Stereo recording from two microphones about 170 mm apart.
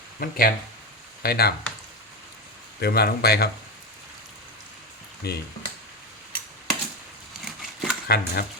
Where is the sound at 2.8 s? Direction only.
65° left (ahead or behind).